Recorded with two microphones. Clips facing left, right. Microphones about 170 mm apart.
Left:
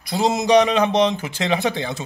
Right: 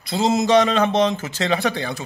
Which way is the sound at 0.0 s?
15° left (ahead or behind).